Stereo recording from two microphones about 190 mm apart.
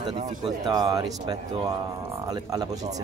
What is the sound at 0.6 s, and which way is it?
Speech, 20° right (ahead or behind).